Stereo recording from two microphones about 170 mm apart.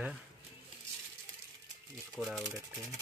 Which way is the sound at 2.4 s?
20° right (ahead or behind).